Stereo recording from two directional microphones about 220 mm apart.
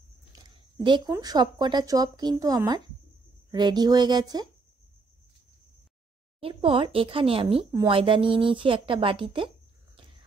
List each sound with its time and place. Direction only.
0.4 s speech: 20° right (ahead or behind)
6.4 s speech: 25° right (ahead or behind)